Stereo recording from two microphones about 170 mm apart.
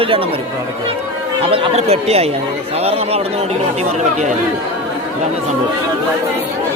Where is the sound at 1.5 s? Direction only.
35° right (ahead or behind).